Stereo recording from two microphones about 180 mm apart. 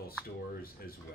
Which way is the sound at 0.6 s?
55° left (ahead or behind).